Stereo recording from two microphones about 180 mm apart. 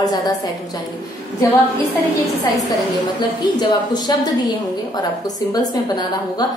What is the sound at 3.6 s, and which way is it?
A woman's voice, 20° left (ahead or behind).